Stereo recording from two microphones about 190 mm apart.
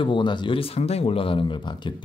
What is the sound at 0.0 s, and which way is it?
Speech, 25° left (ahead or behind).